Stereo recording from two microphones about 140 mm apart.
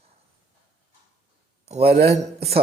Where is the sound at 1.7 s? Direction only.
45° right (ahead or behind).